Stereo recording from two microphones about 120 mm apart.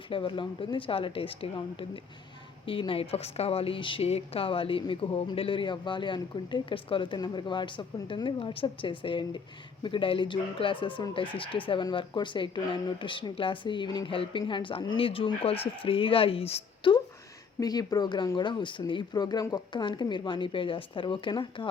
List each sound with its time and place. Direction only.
0.1 s a woman's voice: 45° left (ahead or behind)
17.6 s speech: 30° left (ahead or behind)